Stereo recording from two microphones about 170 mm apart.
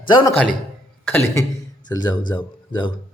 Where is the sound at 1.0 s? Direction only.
15° left (ahead or behind).